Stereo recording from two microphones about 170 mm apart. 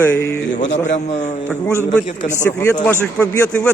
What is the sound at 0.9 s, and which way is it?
Speech, 40° left (ahead or behind).